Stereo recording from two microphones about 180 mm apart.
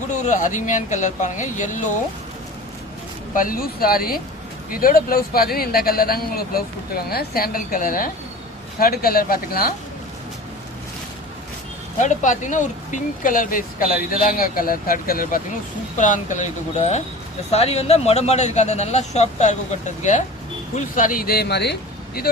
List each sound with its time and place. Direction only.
0.1 s speech: 45° left (ahead or behind)
3.3 s speech: 50° left (ahead or behind)
11.9 s speech: 45° left (ahead or behind); by 22.3 s 65° left (ahead or behind)